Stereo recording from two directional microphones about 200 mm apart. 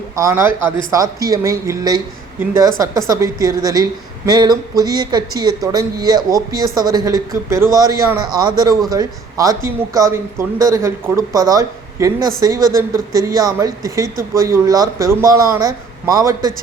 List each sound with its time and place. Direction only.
0.2 s speech: 15° right (ahead or behind)